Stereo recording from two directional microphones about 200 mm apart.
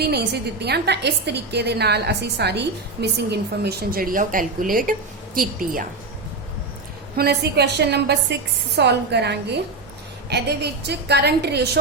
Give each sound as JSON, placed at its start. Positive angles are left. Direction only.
{"t": 0.0, "sound": "a woman's voice", "side_deg": -55}
{"t": 7.2, "sound": "a woman's voice", "side_deg": -55}